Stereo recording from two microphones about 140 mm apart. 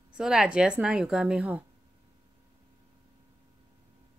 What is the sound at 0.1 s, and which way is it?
A woman's voice, 5° right (ahead or behind).